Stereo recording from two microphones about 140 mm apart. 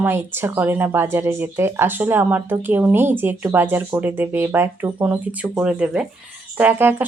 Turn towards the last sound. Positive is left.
turn(degrees=-15)  # may be behind; listen again after turning